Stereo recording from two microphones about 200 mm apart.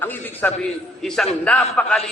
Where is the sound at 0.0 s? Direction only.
10° left (ahead or behind).